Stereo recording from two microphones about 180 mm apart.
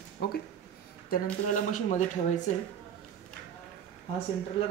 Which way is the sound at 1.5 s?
45° left (ahead or behind).